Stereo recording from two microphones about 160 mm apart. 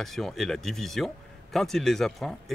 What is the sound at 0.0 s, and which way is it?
Speech, centre (ahead or behind).